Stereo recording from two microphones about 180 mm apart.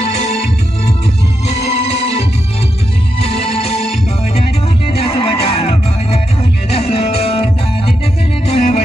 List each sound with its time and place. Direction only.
0.0 s music: 35° left (ahead or behind)
1.5 s music: 35° left (ahead or behind)
4.9 s music: 35° left (ahead or behind)